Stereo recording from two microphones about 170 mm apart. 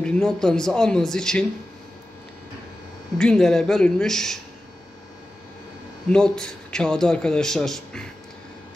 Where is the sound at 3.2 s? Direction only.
5° left (ahead or behind).